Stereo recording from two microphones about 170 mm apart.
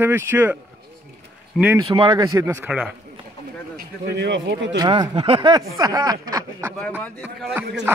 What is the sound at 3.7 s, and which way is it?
Speech, 80° right.